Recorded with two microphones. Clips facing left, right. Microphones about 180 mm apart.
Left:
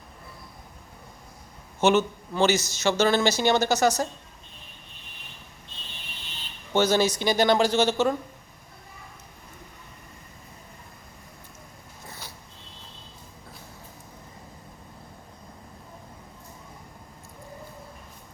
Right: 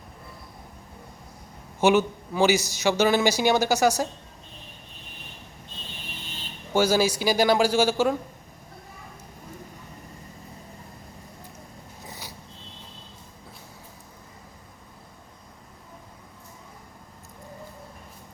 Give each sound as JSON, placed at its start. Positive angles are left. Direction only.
{"t": 1.8, "sound": "speech", "side_deg": -10}
{"t": 6.7, "sound": "speech", "side_deg": -10}
{"t": 12.0, "sound": "a sound", "side_deg": -15}